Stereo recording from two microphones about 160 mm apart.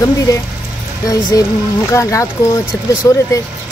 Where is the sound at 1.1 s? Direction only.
20° left (ahead or behind).